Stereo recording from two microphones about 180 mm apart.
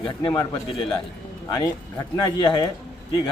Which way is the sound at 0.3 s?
25° left (ahead or behind).